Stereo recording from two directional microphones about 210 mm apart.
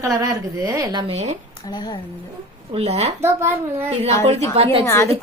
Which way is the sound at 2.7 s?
30° right (ahead or behind).